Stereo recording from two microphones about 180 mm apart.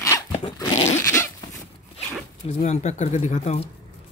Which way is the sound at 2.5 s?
40° left (ahead or behind).